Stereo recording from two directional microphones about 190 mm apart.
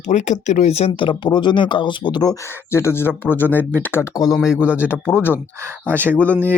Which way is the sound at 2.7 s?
15° left (ahead or behind).